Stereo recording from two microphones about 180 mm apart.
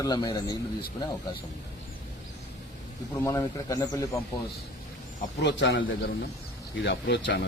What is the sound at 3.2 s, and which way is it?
A man's voice, 15° left (ahead or behind).